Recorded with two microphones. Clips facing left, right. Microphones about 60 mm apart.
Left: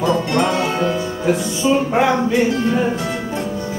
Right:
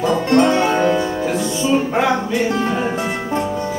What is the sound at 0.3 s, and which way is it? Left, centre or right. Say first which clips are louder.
Music: right 4 dB; right.